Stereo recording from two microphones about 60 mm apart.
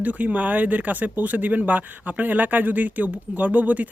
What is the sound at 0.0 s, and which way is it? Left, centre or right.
Speech, right.